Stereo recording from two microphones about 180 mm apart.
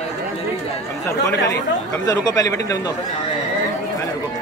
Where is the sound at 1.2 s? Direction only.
20° left (ahead or behind).